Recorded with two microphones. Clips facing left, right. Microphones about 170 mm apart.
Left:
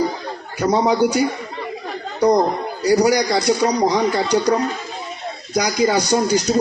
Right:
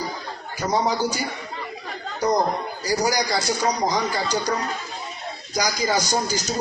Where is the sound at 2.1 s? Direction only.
65° left (ahead or behind).